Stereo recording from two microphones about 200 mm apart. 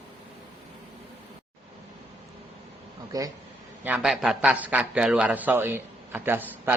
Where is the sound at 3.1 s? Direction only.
15° right (ahead or behind).